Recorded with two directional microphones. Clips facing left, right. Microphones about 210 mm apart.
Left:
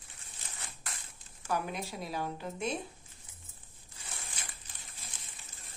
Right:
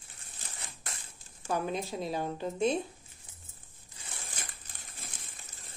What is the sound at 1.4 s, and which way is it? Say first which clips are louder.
A woman's voice: right 3 dB; 25° right (ahead or behind).